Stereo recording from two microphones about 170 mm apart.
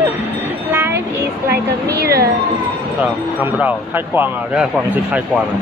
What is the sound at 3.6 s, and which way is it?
Speech, 10° right (ahead or behind).